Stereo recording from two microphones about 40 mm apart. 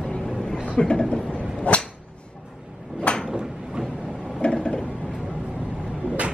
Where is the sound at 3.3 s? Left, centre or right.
Centre.